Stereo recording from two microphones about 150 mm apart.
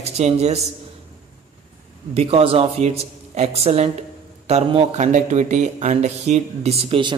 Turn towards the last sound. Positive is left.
turn(degrees=-35)  # may be behind; listen again after turning